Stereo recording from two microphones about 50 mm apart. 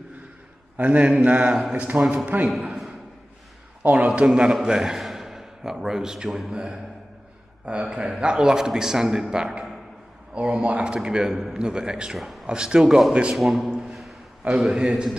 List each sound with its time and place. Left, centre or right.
0.7 s a man's voice: right
3.8 s a man's voice: right; by 12.4 s centre
12.4 s a man's voice: centre
13.1 s speech: right
13.4 s a man's voice: centre
13.7 s a sound: centre
14.4 s a man's voice: right
14.8 s a man's voice: centre